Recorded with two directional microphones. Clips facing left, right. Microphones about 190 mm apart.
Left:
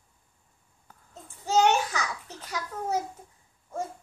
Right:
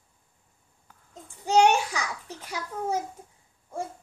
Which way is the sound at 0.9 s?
45° left (ahead or behind).